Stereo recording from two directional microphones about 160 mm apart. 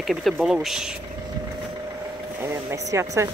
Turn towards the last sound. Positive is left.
turn(degrees=-20)  # may be behind; listen again after turning